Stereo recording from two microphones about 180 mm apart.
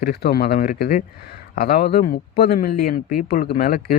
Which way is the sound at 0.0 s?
60° left (ahead or behind).